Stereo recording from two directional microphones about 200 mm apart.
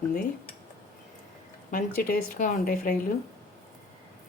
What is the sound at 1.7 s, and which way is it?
A woman's voice, 45° left (ahead or behind).